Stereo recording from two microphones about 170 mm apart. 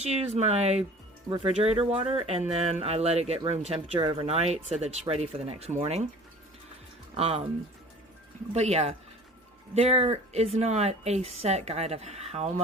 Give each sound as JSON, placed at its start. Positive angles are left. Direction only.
{"t": 0.0, "sound": "speech", "side_deg": -40}
{"t": 7.1, "sound": "speech", "side_deg": -35}
{"t": 8.5, "sound": "speech", "side_deg": -40}